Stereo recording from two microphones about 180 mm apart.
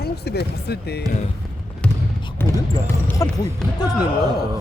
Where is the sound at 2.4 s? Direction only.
10° left (ahead or behind).